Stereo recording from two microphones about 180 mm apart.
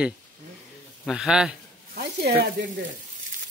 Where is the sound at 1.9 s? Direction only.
60° right (ahead or behind).